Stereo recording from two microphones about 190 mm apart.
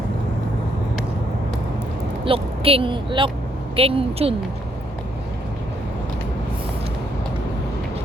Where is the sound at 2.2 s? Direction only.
30° right (ahead or behind).